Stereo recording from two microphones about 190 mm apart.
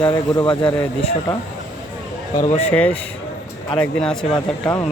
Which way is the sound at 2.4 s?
35° left (ahead or behind).